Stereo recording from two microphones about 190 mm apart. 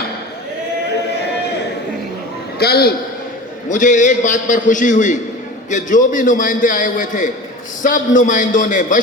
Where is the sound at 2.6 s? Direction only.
55° left (ahead or behind).